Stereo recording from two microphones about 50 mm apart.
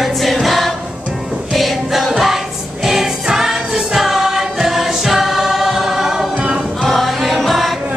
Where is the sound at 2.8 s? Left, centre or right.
Centre.